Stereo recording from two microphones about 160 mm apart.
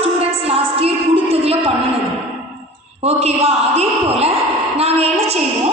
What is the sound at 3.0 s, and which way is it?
A man's voice, 40° right (ahead or behind).